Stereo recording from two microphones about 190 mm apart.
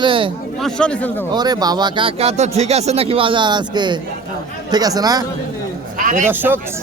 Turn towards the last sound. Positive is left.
turn(degrees=-10)  # may be behind; listen again after turning